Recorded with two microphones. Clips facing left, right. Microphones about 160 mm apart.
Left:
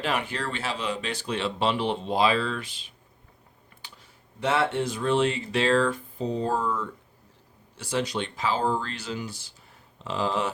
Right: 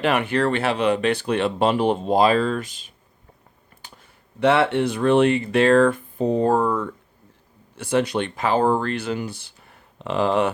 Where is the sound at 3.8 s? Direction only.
45° right (ahead or behind).